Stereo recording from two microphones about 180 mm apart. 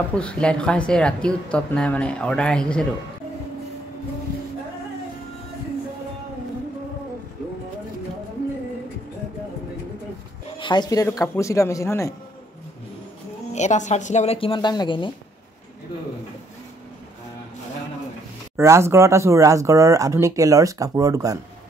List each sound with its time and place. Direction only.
0.1 s speech: 5° left (ahead or behind)
10.6 s speech: 25° left (ahead or behind)
13.5 s speech: 40° left (ahead or behind)
18.6 s speech: 15° right (ahead or behind)